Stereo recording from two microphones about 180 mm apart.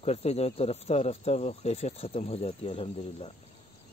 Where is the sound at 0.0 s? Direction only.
35° left (ahead or behind).